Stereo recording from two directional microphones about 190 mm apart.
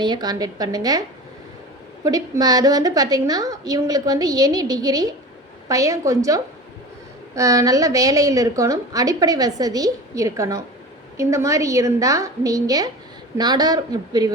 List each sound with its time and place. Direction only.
0.0 s a woman's voice: 20° right (ahead or behind)
2.0 s a woman's voice: 20° right (ahead or behind)